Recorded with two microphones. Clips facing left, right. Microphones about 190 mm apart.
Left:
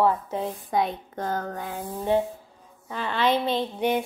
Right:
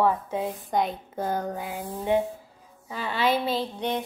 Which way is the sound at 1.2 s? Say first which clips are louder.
Right 1 dB; 10° right (ahead or behind).